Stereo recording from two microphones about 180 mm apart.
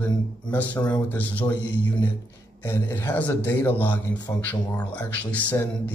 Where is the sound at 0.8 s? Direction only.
25° left (ahead or behind).